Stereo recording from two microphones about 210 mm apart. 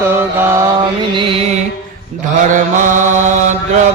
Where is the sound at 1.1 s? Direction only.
25° right (ahead or behind).